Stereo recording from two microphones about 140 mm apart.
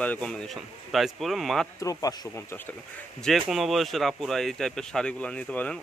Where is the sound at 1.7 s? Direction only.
25° left (ahead or behind).